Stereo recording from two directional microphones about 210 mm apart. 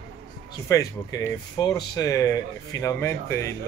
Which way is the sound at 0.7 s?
15° left (ahead or behind).